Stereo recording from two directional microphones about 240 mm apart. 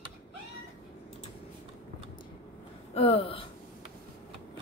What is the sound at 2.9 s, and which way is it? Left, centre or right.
Speech, left.